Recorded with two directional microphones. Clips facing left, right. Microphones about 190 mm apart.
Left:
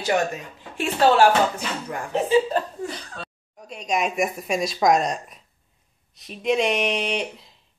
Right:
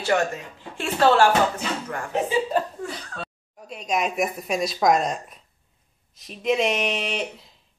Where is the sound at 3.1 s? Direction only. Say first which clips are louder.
Right 2 dB; centre (ahead or behind).